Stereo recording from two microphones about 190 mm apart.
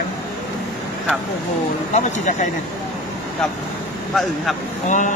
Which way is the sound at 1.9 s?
40° left (ahead or behind).